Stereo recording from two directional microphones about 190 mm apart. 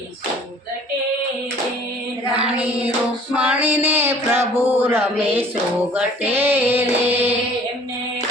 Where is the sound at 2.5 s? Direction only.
10° right (ahead or behind).